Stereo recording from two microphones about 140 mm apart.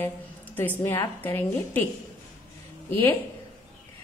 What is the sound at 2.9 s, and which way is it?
Speech, 15° left (ahead or behind).